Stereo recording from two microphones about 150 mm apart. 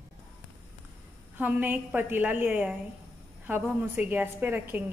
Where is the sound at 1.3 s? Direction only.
10° right (ahead or behind).